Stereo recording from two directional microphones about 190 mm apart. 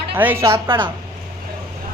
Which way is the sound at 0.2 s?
10° right (ahead or behind).